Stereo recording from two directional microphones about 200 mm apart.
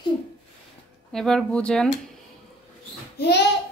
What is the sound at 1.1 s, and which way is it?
Speech, centre (ahead or behind).